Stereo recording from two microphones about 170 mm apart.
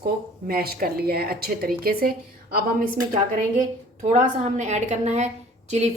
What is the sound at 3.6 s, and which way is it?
A woman's voice, 45° right (ahead or behind).